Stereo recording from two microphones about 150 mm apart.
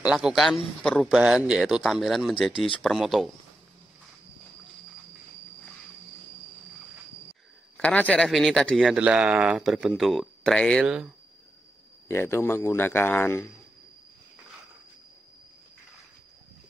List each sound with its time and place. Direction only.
0.0 s speech: 5° right (ahead or behind)
7.7 s speech: 10° left (ahead or behind)
12.1 s a man's voice: 15° left (ahead or behind)